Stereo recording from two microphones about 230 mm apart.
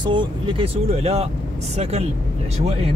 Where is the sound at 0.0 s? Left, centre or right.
Right.